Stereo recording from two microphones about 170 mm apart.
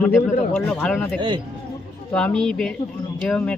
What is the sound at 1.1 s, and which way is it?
Speech, 30° right (ahead or behind).